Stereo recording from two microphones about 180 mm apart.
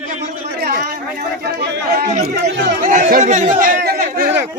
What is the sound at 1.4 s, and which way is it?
Speech, 65° right (ahead or behind).